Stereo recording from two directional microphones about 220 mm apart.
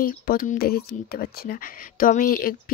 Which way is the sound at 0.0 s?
40° left (ahead or behind).